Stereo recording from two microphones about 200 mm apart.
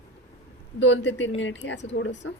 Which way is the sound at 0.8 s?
65° left (ahead or behind).